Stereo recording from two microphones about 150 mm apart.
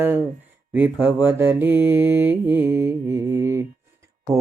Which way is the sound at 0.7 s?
15° right (ahead or behind).